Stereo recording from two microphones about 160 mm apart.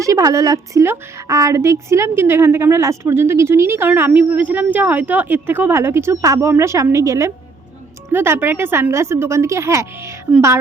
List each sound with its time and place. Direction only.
0.0 s a woman's voice: 20° right (ahead or behind)